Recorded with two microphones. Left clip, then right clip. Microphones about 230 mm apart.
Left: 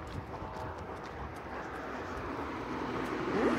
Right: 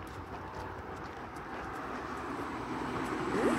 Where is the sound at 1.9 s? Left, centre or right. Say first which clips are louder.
Even; right.